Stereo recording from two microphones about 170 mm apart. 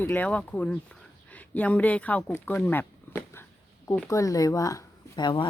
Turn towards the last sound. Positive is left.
turn(degrees=25)  # may be behind; listen again after turning